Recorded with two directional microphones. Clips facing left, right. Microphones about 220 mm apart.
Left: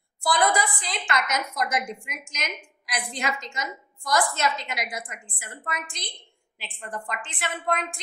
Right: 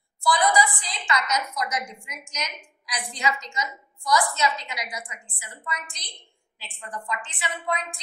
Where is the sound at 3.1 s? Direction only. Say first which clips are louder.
Right 4 dB; 50° left (ahead or behind).